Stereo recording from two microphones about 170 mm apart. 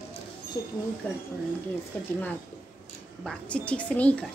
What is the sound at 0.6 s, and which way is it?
Speech, 20° left (ahead or behind).